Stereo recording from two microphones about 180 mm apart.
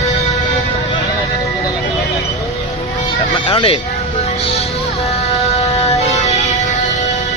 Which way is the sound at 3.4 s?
30° left (ahead or behind).